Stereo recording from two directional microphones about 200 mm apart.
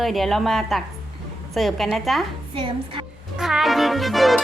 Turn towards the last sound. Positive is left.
turn(degrees=0)  # may be behind; listen again after turning